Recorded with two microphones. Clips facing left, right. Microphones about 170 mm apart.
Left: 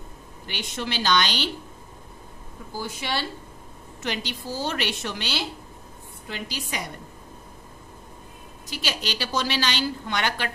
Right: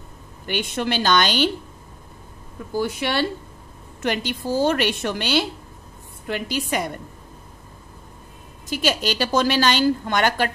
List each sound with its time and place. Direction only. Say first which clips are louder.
0.5 s a woman's voice: right 7 dB; 55° right (ahead or behind)
2.7 s a woman's voice: right 7 dB; 60° right (ahead or behind)
8.6 s a woman's voice: right 8 dB; 50° right (ahead or behind)